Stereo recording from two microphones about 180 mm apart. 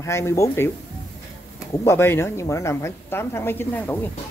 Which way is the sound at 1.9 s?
15° left (ahead or behind).